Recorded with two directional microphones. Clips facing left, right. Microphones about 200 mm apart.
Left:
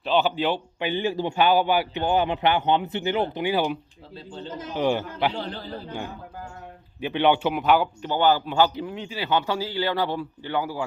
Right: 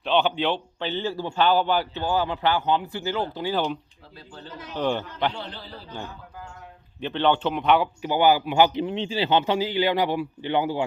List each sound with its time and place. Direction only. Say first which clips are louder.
0.0 s a man's voice: even; 5° left (ahead or behind)
4.3 s a man's voice: left 6 dB; 25° left (ahead or behind)
4.7 s a man's voice: left 2 dB; 10° left (ahead or behind)
7.0 s a man's voice: left 1 dB; 10° left (ahead or behind)
8.0 s a man's voice: right 1 dB; 10° right (ahead or behind)